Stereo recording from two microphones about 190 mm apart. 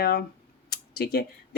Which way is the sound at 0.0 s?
55° left (ahead or behind).